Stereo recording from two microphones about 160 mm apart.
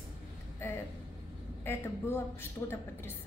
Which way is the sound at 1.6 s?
15° left (ahead or behind).